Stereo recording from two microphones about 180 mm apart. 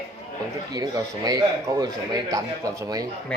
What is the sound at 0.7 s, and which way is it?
Speech, 20° right (ahead or behind).